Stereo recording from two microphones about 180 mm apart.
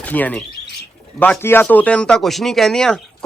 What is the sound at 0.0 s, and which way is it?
Speech, 10° left (ahead or behind).